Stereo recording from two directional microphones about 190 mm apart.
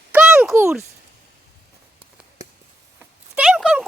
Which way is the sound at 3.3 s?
5° right (ahead or behind).